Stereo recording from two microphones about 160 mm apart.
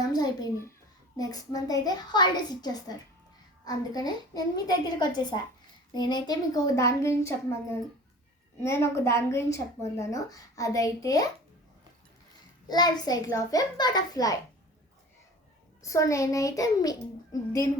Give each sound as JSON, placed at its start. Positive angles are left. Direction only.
{"t": 0.1, "sound": "a child's voice", "side_deg": 25}
{"t": 12.6, "sound": "a woman's voice", "side_deg": 25}
{"t": 15.8, "sound": "a woman's voice", "side_deg": 20}